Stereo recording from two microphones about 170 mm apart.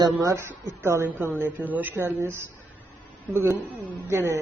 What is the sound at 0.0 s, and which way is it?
A woman's voice, 20° right (ahead or behind).